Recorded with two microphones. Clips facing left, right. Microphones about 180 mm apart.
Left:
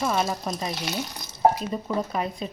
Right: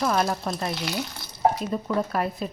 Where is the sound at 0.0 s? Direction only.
Centre (ahead or behind).